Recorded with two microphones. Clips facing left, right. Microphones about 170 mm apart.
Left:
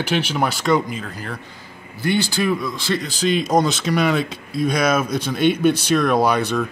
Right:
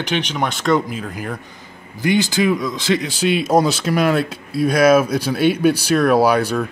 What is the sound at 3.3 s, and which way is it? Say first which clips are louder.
Speech: right 2 dB; 5° right (ahead or behind).